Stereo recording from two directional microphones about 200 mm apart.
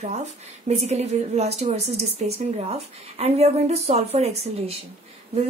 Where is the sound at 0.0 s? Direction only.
35° right (ahead or behind).